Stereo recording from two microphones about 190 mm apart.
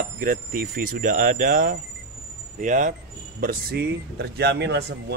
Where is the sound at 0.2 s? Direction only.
50° right (ahead or behind).